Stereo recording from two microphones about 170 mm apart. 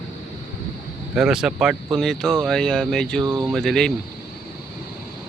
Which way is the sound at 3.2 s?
15° right (ahead or behind).